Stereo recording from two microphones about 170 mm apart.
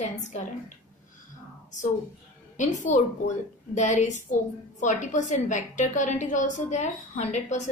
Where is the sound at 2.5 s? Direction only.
45° left (ahead or behind).